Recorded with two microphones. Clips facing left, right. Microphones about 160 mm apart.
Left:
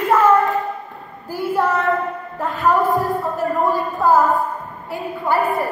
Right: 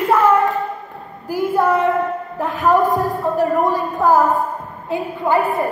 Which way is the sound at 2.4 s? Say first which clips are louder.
Right 2 dB; 15° right (ahead or behind).